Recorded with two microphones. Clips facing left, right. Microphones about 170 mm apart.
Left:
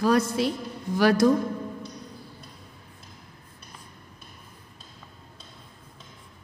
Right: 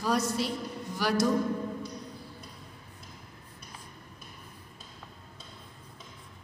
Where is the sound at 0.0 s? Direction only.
55° left (ahead or behind).